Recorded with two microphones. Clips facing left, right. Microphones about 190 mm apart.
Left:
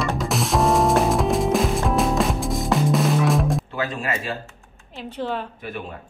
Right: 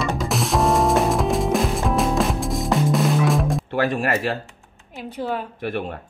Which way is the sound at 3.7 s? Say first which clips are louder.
Right 5 dB; 65° right (ahead or behind).